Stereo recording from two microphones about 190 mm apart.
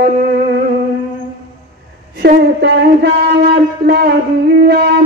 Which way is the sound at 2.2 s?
60° right (ahead or behind).